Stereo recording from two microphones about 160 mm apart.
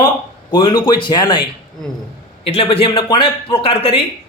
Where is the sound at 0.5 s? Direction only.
30° left (ahead or behind).